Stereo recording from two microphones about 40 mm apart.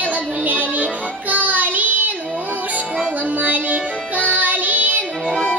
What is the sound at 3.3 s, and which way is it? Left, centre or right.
Music, right.